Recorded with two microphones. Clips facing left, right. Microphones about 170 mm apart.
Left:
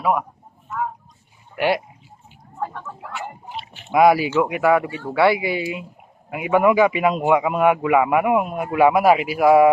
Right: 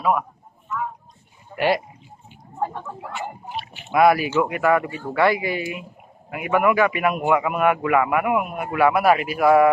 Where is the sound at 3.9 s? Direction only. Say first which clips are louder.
Left 2 dB; 15° left (ahead or behind).